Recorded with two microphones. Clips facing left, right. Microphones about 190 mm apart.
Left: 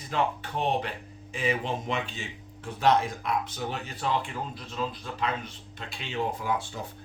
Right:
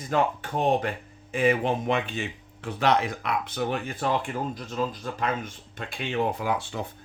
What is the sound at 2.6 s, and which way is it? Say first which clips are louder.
Speech: even; 70° right (ahead or behind).